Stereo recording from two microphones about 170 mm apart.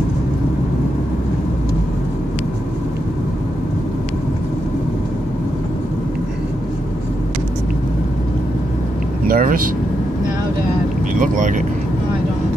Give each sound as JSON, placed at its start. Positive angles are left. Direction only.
{"t": 9.3, "sound": "vehicle", "side_deg": -55}
{"t": 11.1, "sound": "speech", "side_deg": -50}